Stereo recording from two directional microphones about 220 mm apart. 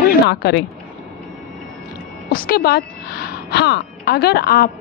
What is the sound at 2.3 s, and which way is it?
A woman's voice, 40° left (ahead or behind).